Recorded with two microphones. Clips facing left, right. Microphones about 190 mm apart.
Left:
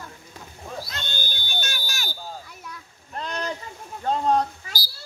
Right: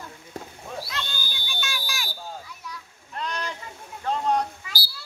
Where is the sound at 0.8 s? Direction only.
40° left (ahead or behind).